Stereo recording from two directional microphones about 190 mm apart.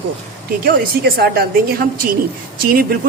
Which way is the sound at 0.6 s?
55° right (ahead or behind).